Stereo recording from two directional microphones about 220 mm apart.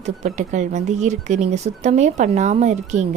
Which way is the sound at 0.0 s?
30° right (ahead or behind).